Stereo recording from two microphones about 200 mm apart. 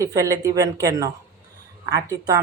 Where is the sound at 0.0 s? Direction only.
15° right (ahead or behind).